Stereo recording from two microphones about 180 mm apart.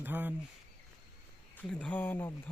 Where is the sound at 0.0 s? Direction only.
10° right (ahead or behind).